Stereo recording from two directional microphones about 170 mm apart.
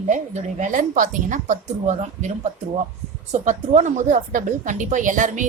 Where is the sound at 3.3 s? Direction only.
45° right (ahead or behind).